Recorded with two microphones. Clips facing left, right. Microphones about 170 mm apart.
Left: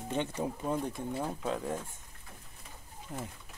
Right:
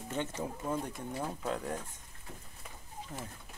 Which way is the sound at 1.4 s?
5° left (ahead or behind).